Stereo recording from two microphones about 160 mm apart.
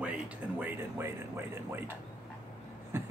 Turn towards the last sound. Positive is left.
turn(degrees=-15)  # may be behind; listen again after turning